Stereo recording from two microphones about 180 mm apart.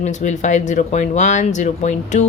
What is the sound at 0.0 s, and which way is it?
Speech, 40° left (ahead or behind).